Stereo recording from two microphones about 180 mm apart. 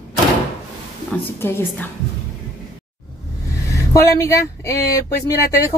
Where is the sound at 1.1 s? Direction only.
5° left (ahead or behind).